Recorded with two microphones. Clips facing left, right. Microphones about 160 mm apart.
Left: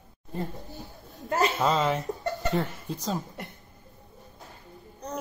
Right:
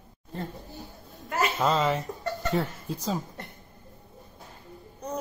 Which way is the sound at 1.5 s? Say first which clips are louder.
Even; centre (ahead or behind).